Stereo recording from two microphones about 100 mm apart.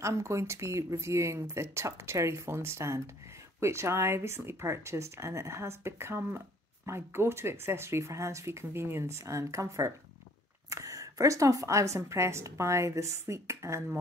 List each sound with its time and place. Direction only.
0.0 s speech: 30° right (ahead or behind)